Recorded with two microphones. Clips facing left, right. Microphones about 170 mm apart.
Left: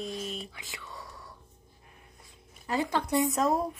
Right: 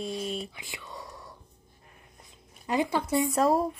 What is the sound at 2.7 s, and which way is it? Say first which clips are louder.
Speech: right 2 dB; 15° right (ahead or behind).